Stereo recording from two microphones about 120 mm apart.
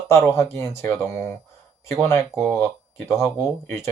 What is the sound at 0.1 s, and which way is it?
Speech, 20° left (ahead or behind).